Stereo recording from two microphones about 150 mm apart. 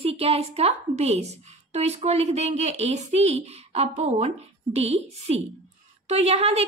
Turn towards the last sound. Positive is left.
turn(degrees=-40)  # may be behind; listen again after turning